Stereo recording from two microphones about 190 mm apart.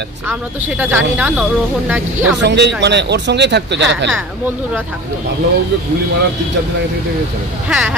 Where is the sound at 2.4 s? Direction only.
65° right (ahead or behind).